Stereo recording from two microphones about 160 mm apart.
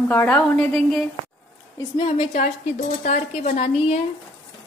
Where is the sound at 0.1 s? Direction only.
10° left (ahead or behind).